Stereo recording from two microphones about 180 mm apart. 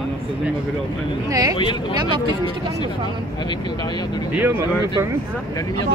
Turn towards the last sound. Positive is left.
turn(degrees=-10)  # may be behind; listen again after turning